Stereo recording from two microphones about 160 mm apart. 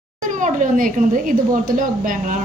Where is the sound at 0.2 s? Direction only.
50° right (ahead or behind).